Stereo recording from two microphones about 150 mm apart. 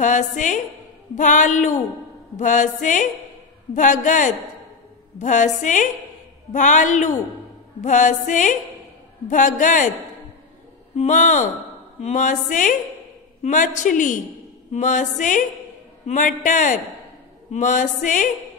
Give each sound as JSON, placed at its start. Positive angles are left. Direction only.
{"t": 0.0, "sound": "music", "side_deg": 55}
{"t": 11.0, "sound": "music", "side_deg": 55}